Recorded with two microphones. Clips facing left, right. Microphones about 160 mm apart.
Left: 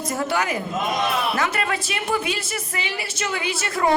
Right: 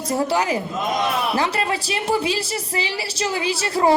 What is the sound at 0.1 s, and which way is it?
A man's voice, 30° right (ahead or behind).